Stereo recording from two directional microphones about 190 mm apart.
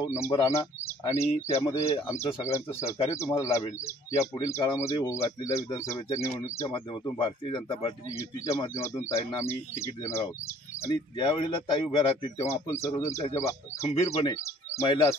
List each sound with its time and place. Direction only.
0.0 s speech: 15° left (ahead or behind)
6.7 s speech: 25° left (ahead or behind)
8.2 s speech: 15° left (ahead or behind)
10.9 s speech: 25° left (ahead or behind)
13.8 s speech: 35° left (ahead or behind)
14.2 s speech: 20° left (ahead or behind)